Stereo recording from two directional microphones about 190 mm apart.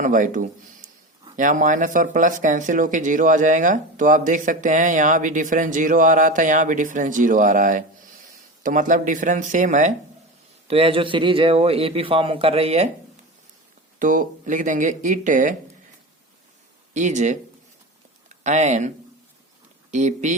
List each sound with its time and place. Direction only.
0.0 s speech: 45° right (ahead or behind)
10.7 s a man's voice: 30° right (ahead or behind)
14.0 s speech: 45° right (ahead or behind)
16.9 s speech: 40° right (ahead or behind)
19.9 s speech: 40° right (ahead or behind)